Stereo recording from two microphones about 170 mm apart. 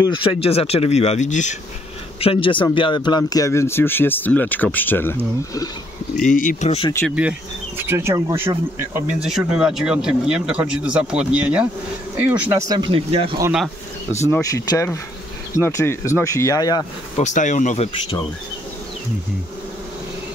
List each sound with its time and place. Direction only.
0.0 s speech: 30° left (ahead or behind)
2.1 s speech: 30° left (ahead or behind); by 5.7 s 15° left (ahead or behind)
6.1 s speech: 50° left (ahead or behind)
7.1 s speech: 5° right (ahead or behind)
9.2 s speech: 5° right (ahead or behind); by 13.4 s 35° right (ahead or behind)
14.2 s speech: 20° left (ahead or behind)
17.2 s speech: 45° left (ahead or behind)